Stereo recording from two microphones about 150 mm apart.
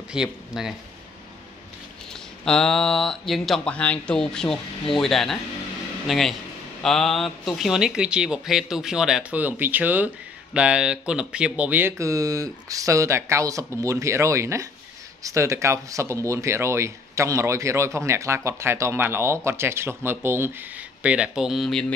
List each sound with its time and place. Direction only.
0.1 s speech: 5° right (ahead or behind)
2.4 s speech: 5° left (ahead or behind)